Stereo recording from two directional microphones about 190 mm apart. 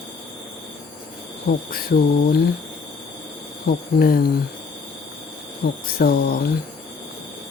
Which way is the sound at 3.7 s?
50° left (ahead or behind).